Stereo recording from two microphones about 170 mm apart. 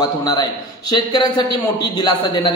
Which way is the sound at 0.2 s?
25° left (ahead or behind).